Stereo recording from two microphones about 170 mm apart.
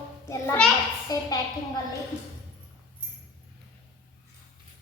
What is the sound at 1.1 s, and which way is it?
Speech, 20° left (ahead or behind).